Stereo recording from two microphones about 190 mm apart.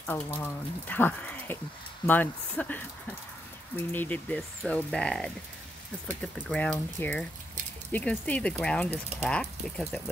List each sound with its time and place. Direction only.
0.0 s speech: 10° left (ahead or behind)
6.5 s speech: 5° left (ahead or behind)